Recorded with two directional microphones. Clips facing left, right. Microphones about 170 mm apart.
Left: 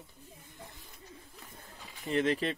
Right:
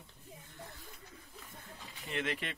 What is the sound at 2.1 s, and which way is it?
Speech, 35° left (ahead or behind).